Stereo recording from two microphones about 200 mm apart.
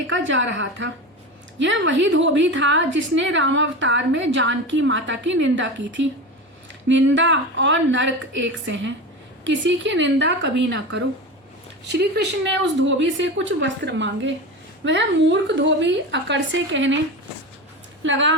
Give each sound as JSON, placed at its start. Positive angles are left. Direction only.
{"t": 0.1, "sound": "a woman's voice", "side_deg": -70}
{"t": 12.8, "sound": "a woman's voice", "side_deg": -65}
{"t": 18.0, "sound": "a woman's voice", "side_deg": -65}